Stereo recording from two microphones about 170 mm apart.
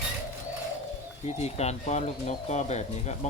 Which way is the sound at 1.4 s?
40° left (ahead or behind).